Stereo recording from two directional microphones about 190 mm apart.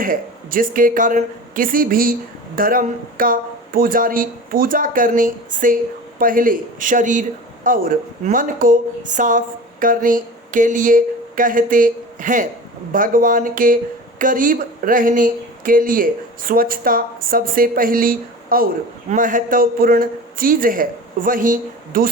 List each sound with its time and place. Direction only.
0.0 s speech: 45° right (ahead or behind)